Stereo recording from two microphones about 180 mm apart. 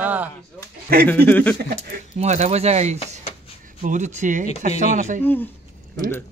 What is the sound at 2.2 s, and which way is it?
Speech, 40° right (ahead or behind).